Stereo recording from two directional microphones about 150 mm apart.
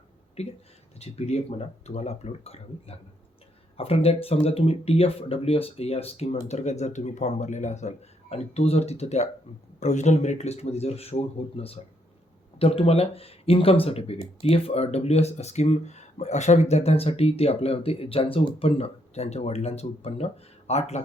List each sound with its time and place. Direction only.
0.4 s speech: 45° left (ahead or behind)